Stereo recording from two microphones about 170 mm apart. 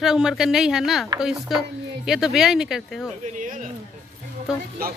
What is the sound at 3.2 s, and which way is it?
Speech, 50° right (ahead or behind).